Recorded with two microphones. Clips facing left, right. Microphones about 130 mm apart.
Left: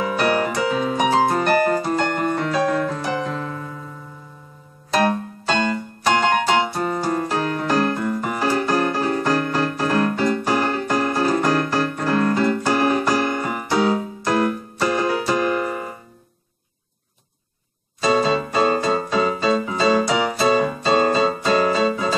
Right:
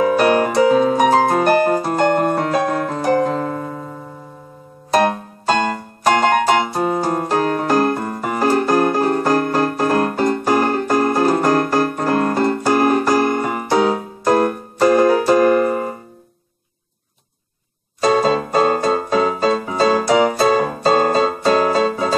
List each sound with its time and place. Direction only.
0.0 s music: 40° right (ahead or behind)
0.5 s keyboard: 40° right (ahead or behind)
6.7 s keyboard: 30° right (ahead or behind)
7.1 s music: 45° right (ahead or behind)
18.0 s keyboard: 45° right (ahead or behind)